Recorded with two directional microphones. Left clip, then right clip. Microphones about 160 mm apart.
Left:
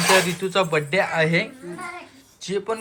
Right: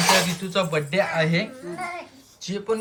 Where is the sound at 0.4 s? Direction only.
10° right (ahead or behind).